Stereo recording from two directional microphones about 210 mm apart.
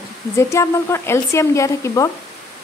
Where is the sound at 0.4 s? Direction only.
15° left (ahead or behind).